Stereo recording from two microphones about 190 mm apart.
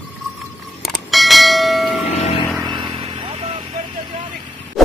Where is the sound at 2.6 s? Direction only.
25° right (ahead or behind).